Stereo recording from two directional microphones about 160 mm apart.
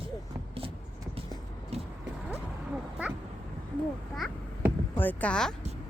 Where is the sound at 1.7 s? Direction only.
40° right (ahead or behind).